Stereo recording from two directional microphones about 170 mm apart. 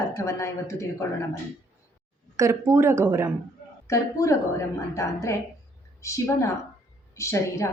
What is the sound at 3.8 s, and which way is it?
A woman's voice, 20° left (ahead or behind).